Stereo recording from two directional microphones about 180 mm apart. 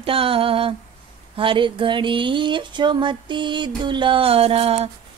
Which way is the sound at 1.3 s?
30° right (ahead or behind).